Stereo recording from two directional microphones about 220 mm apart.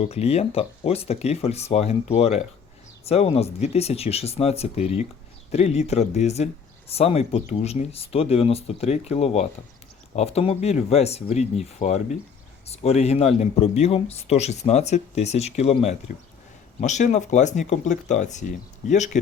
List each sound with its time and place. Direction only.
0.0 s speech: 30° left (ahead or behind)